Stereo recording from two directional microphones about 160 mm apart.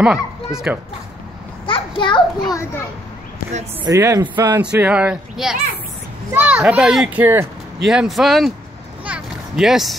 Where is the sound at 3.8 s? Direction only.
20° right (ahead or behind).